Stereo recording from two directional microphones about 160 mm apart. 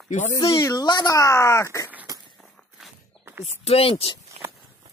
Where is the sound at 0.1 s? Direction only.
50° left (ahead or behind).